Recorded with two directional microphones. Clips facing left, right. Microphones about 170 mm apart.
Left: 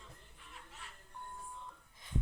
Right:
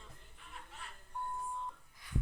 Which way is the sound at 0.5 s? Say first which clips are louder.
Right 3 dB; 55° right (ahead or behind).